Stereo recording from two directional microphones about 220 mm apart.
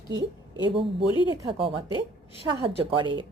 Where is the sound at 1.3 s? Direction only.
20° right (ahead or behind).